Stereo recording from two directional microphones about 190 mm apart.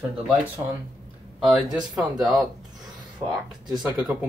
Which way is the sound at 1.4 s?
5° right (ahead or behind).